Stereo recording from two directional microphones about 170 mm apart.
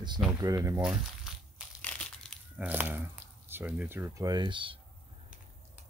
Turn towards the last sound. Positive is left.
turn(degrees=-30)  # may be behind; listen again after turning